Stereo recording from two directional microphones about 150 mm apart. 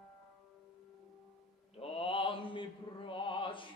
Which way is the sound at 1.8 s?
40° left (ahead or behind).